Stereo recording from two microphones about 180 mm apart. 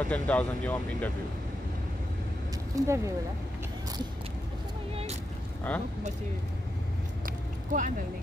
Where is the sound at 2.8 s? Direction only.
15° right (ahead or behind).